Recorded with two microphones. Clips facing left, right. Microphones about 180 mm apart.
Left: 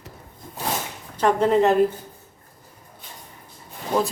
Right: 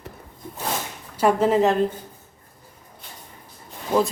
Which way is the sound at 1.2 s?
5° right (ahead or behind).